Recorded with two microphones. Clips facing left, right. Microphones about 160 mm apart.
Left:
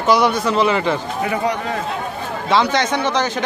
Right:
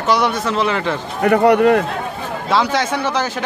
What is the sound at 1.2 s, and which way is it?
Speech, 60° right (ahead or behind).